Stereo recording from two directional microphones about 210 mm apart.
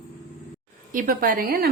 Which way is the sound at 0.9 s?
40° right (ahead or behind).